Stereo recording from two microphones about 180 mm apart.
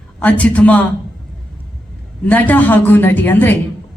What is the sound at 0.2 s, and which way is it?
Speech, 10° left (ahead or behind).